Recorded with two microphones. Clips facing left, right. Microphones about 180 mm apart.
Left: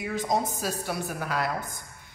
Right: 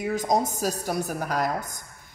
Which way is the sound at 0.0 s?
45° right (ahead or behind).